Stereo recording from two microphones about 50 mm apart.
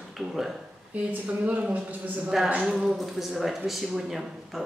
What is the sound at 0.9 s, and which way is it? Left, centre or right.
Speech, right.